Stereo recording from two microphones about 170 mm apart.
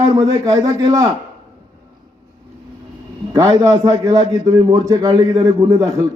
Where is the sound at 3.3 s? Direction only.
20° right (ahead or behind).